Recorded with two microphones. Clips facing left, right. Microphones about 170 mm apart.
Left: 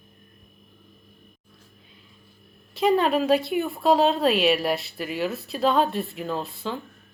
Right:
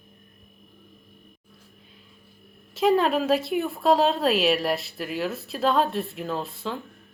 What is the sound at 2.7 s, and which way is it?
Speech, centre (ahead or behind).